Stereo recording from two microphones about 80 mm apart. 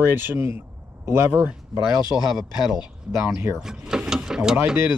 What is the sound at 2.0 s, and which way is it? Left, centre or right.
Speech, left.